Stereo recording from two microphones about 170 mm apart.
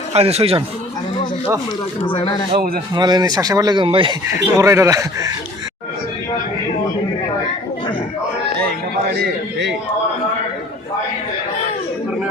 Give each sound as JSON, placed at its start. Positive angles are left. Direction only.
{"t": 0.1, "sound": "a man's voice", "side_deg": -35}
{"t": 2.0, "sound": "speech", "side_deg": 30}
{"t": 2.9, "sound": "speech", "side_deg": -25}
{"t": 8.6, "sound": "a sound", "side_deg": -70}